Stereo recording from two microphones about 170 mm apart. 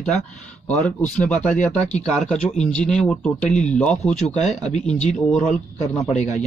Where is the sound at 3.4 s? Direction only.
45° left (ahead or behind).